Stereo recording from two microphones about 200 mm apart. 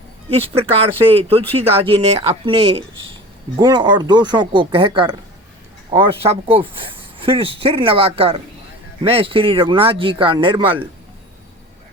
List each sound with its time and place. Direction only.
0.3 s speech: 30° right (ahead or behind)